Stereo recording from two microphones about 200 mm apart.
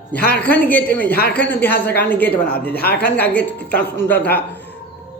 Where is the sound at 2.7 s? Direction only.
50° left (ahead or behind).